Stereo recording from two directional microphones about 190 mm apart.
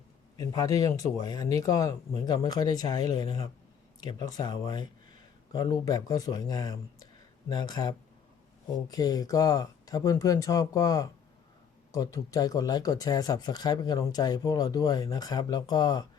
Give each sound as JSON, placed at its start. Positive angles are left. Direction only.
{"t": 0.3, "sound": "speech", "side_deg": 20}